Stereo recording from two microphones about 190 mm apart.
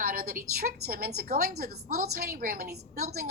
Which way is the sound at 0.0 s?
50° right (ahead or behind).